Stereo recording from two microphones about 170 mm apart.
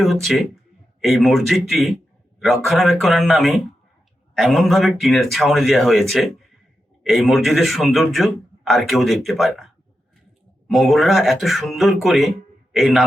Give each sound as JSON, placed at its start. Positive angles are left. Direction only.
{"t": 0.0, "sound": "a man's voice", "side_deg": 0}
{"t": 10.7, "sound": "a man's voice", "side_deg": 0}